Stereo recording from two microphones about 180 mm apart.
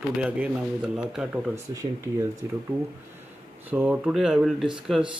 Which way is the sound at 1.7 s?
20° right (ahead or behind).